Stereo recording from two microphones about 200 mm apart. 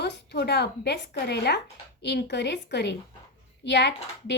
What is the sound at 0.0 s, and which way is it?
Speech, 60° left (ahead or behind).